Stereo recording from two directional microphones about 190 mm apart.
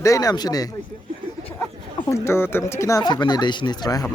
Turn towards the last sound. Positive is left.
turn(degrees=20)  # may be behind; listen again after turning